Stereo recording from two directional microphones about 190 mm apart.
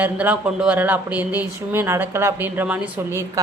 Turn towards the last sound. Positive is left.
turn(degrees=-10)  # may be behind; listen again after turning